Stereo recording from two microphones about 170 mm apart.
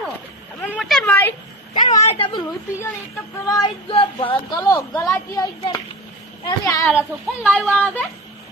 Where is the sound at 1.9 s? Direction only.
35° left (ahead or behind).